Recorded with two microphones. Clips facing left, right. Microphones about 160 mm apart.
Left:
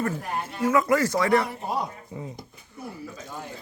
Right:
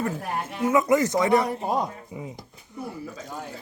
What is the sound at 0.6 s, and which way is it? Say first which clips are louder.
Speech: right 1 dB; 20° right (ahead or behind).